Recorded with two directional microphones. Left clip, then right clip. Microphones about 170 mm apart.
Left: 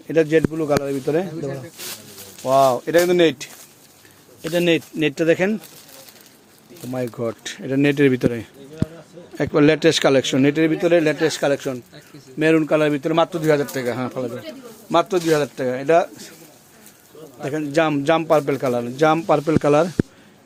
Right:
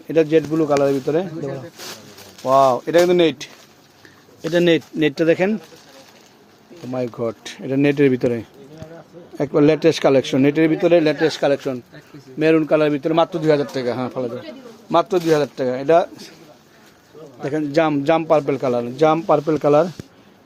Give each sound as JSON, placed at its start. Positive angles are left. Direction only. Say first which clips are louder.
{"t": 0.1, "sound": "a man's voice", "louder": "right 1 dB", "side_deg": 0}
{"t": 4.5, "sound": "speech", "louder": "right 2 dB", "side_deg": -35}
{"t": 4.9, "sound": "a man's voice", "louder": "right 1 dB", "side_deg": -15}
{"t": 6.8, "sound": "a man's voice", "louder": "right 2 dB", "side_deg": 0}
{"t": 17.4, "sound": "a man's voice", "louder": "right 1 dB", "side_deg": -15}